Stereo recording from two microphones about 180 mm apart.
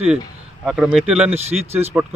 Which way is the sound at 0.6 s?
Centre (ahead or behind).